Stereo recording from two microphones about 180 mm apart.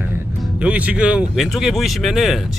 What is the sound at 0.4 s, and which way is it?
Speech, 5° right (ahead or behind).